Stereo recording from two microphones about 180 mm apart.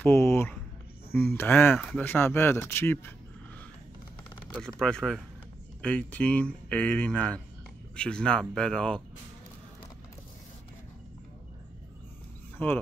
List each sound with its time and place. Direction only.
0.0 s speech: 15° left (ahead or behind)
4.6 s speech: 5° left (ahead or behind)
12.5 s speech: 10° left (ahead or behind)